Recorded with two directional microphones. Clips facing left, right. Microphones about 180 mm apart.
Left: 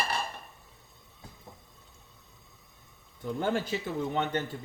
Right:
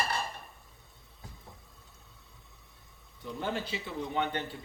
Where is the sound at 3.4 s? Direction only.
45° left (ahead or behind).